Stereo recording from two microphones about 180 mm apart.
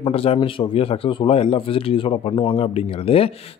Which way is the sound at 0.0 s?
30° left (ahead or behind).